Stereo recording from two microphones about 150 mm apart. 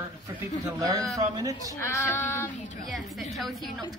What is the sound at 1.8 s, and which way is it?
Female singing, 20° left (ahead or behind).